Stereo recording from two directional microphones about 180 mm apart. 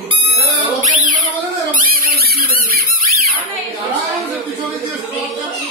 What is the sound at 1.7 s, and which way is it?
Squeak, 50° right (ahead or behind).